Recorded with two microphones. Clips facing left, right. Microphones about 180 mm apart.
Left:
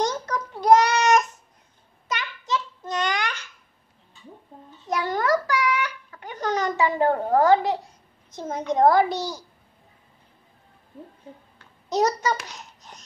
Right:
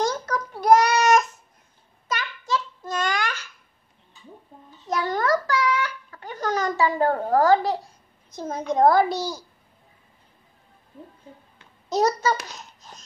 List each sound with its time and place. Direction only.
0.0 s child singing: 20° left (ahead or behind)
2.0 s babbling: 20° left (ahead or behind)
4.8 s babbling: 15° left (ahead or behind)
8.3 s a child's voice: 20° left (ahead or behind)
11.9 s babbling: 20° left (ahead or behind)
12.5 s laughter: 20° left (ahead or behind)